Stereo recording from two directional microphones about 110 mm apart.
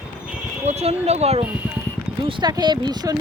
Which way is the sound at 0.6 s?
75° right (ahead or behind).